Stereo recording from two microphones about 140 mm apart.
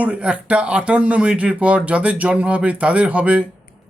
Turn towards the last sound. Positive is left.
turn(degrees=-10)  # may be behind; listen again after turning